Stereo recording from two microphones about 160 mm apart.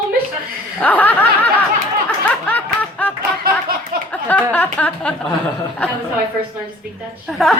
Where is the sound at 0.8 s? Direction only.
10° left (ahead or behind).